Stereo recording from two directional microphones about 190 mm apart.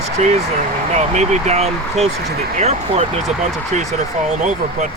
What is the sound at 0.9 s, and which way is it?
Speech, 35° right (ahead or behind).